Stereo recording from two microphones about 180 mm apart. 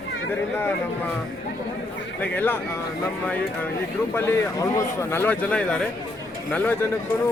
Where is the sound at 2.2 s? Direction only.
10° left (ahead or behind).